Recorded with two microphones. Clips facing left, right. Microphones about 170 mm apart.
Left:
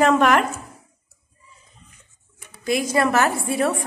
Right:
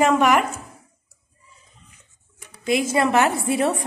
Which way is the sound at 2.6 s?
20° right (ahead or behind).